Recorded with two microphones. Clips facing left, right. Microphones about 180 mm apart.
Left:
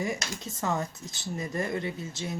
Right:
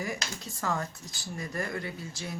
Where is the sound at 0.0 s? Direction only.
20° left (ahead or behind).